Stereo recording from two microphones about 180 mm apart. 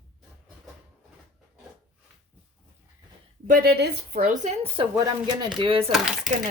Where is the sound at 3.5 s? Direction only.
65° right (ahead or behind); by 4.5 s 50° right (ahead or behind).